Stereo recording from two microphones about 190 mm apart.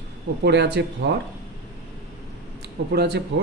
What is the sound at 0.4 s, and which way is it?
Speech, 65° right (ahead or behind).